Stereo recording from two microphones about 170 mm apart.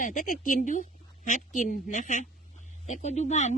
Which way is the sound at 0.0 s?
50° left (ahead or behind).